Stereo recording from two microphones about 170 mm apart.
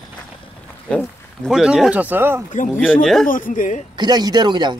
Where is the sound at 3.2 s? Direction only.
55° left (ahead or behind).